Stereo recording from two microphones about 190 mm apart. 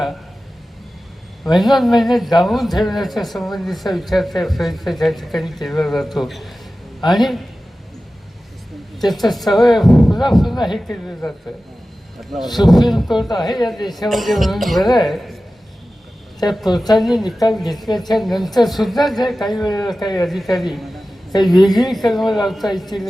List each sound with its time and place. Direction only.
1.5 s a man's voice: centre (ahead or behind)
9.0 s a man's voice: centre (ahead or behind)
16.5 s a man's voice: centre (ahead or behind)
19.6 s speech: 20° left (ahead or behind)
20.2 s a man's voice: centre (ahead or behind)